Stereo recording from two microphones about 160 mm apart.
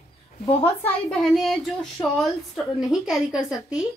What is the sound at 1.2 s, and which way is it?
Speech, centre (ahead or behind).